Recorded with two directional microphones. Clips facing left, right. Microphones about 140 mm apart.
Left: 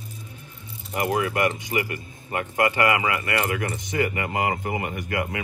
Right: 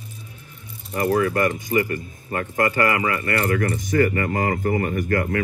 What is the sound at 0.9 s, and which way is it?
A man's voice, 20° left (ahead or behind).